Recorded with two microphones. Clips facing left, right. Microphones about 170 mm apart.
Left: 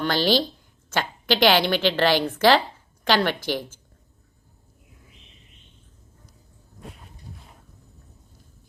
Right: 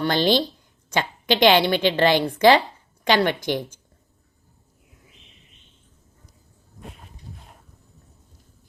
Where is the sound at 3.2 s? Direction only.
15° right (ahead or behind).